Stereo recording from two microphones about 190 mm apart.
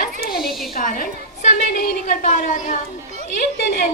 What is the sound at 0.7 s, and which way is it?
A woman's voice, 50° left (ahead or behind).